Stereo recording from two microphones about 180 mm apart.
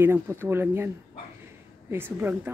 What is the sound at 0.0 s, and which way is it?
Speech, 15° right (ahead or behind).